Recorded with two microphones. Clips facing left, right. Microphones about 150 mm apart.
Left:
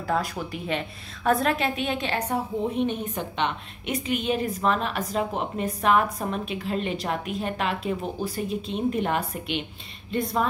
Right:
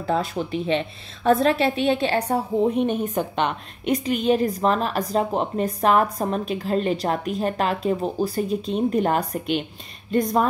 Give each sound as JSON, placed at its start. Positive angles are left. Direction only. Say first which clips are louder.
{"t": 0.0, "sound": "a woman's voice", "louder": "right 3 dB", "side_deg": -25}
{"t": 2.9, "sound": "a woman's voice", "louder": "right 6 dB", "side_deg": -45}